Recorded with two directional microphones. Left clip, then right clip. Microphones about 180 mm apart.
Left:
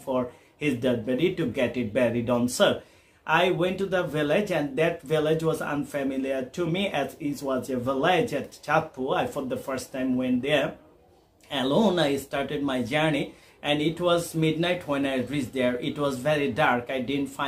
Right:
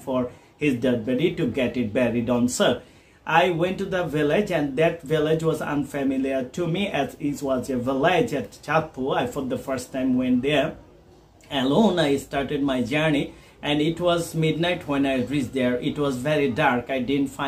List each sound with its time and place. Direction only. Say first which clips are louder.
0.0 s speech: right 2 dB; 20° left (ahead or behind)